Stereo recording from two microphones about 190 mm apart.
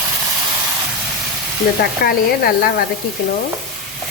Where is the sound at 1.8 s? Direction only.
50° left (ahead or behind).